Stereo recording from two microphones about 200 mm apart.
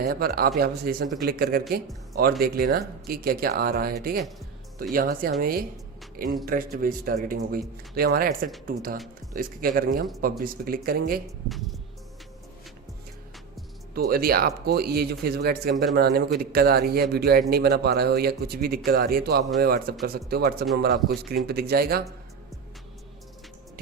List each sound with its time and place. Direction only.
0.0 s speech: 50° right (ahead or behind)
13.9 s speech: 50° right (ahead or behind)